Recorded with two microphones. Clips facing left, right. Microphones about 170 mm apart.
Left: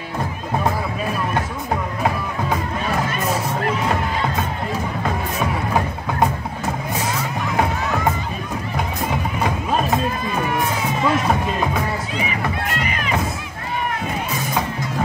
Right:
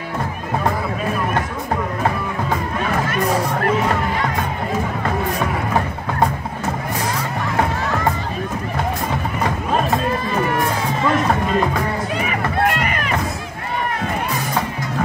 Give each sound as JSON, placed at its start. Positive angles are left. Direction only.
{"t": 7.5, "sound": "music", "side_deg": 10}
{"t": 11.1, "sound": "music", "side_deg": 10}
{"t": 12.3, "sound": "music", "side_deg": -55}